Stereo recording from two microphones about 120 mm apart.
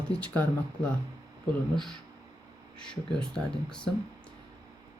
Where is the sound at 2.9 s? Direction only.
5° left (ahead or behind).